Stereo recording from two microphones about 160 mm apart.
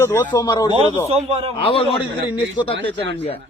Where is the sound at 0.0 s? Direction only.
15° left (ahead or behind).